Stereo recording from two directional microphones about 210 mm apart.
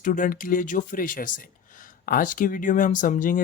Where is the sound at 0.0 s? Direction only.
40° left (ahead or behind).